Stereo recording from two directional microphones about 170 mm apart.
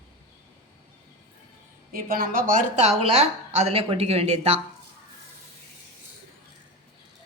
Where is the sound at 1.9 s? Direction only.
60° right (ahead or behind); by 4.5 s 40° right (ahead or behind).